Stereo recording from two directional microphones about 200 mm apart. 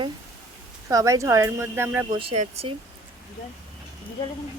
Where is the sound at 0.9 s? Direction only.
15° right (ahead or behind).